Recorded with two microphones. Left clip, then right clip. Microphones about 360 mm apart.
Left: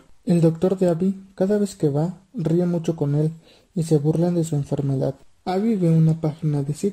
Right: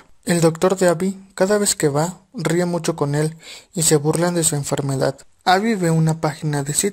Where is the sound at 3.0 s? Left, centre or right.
Right.